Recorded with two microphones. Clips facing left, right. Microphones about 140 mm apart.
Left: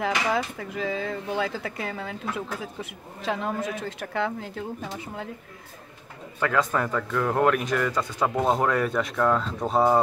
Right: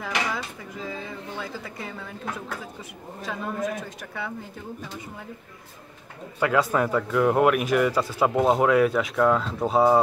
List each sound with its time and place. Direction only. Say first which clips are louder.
0.0 s speech: left 4 dB; 70° left (ahead or behind)
6.4 s speech: right 2 dB; 10° right (ahead or behind)